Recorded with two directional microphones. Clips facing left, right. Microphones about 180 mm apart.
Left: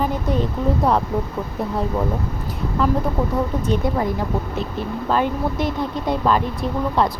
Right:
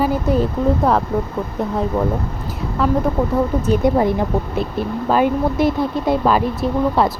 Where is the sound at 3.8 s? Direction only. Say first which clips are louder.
Right 7 dB; 20° right (ahead or behind).